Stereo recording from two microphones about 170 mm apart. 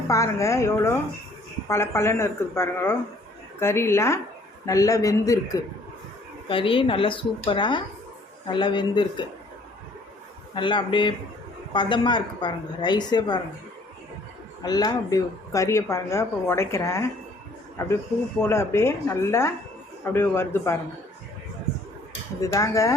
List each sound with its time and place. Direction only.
0.1 s a woman's voice: 20° left (ahead or behind)
6.5 s a woman's voice: 30° left (ahead or behind)
10.5 s a woman's voice: 30° left (ahead or behind)
14.6 s speech: 25° left (ahead or behind)
18.4 s speech: 15° left (ahead or behind)
22.4 s a woman's voice: 20° left (ahead or behind)